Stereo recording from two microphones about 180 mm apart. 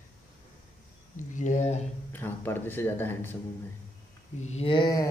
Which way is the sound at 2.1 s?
10° left (ahead or behind).